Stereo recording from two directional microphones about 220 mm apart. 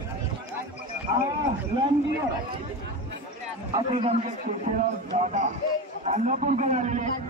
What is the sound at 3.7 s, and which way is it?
A man's voice, 25° right (ahead or behind).